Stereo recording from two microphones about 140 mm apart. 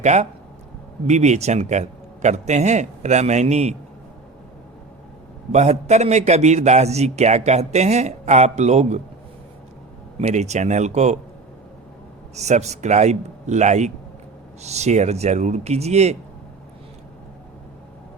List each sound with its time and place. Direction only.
0.0 s a man's voice: 55° right (ahead or behind)
5.5 s a man's voice: 55° right (ahead or behind)
10.2 s a man's voice: 55° right (ahead or behind)
12.4 s a man's voice: 55° right (ahead or behind)